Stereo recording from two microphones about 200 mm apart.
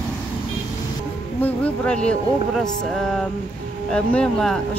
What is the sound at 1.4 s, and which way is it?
Speech, 5° left (ahead or behind).